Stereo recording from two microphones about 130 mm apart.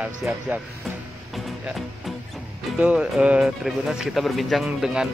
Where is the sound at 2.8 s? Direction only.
10° right (ahead or behind).